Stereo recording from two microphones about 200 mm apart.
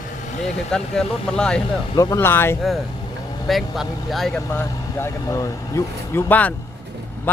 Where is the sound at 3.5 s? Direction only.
Centre (ahead or behind).